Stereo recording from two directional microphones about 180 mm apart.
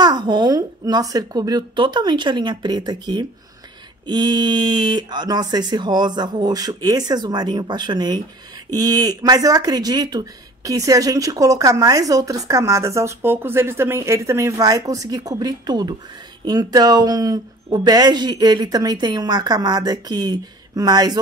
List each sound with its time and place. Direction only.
0.0 s speech: 25° right (ahead or behind)